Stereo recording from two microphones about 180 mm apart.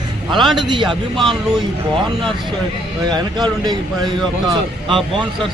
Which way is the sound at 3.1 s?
25° right (ahead or behind).